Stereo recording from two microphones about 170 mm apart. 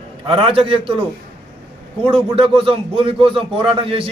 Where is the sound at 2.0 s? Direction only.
30° right (ahead or behind).